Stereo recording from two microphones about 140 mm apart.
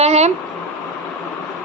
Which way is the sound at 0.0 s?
50° right (ahead or behind).